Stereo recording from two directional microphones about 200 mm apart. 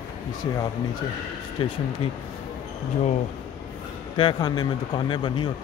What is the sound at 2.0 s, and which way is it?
Speech, 30° left (ahead or behind).